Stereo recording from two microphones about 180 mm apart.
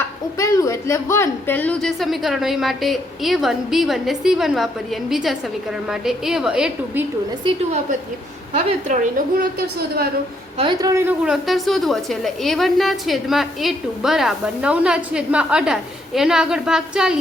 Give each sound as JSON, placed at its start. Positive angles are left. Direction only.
{"t": 0.3, "sound": "a woman's voice", "side_deg": 20}
{"t": 8.5, "sound": "a woman's voice", "side_deg": -45}
{"t": 10.6, "sound": "a woman's voice", "side_deg": -25}
{"t": 11.3, "sound": "a woman's voice", "side_deg": 0}